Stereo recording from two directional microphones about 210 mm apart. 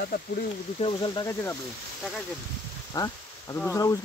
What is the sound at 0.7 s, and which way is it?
Speech, 25° left (ahead or behind).